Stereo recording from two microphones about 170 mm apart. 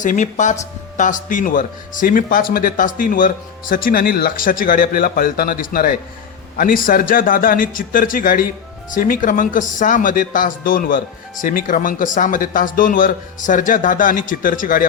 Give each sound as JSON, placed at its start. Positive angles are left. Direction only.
{"t": 0.0, "sound": "a man's voice", "side_deg": 45}